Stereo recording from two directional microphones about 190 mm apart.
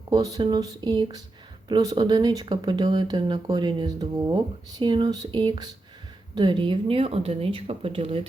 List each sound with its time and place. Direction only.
0.1 s speech: 20° right (ahead or behind)